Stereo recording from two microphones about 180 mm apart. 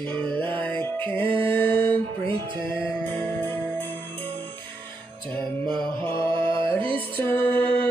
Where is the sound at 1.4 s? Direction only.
10° left (ahead or behind).